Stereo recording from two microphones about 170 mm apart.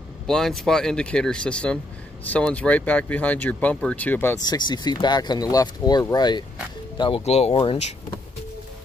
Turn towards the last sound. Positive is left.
turn(degrees=35)  # may be behind; listen again after turning